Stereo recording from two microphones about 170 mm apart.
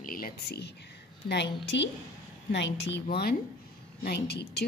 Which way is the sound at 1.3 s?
90° left.